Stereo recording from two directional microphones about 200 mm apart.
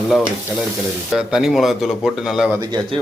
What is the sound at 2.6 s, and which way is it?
Speech, 20° right (ahead or behind).